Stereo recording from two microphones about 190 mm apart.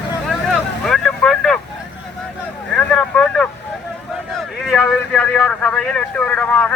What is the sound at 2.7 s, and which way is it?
Vehicle, 5° left (ahead or behind).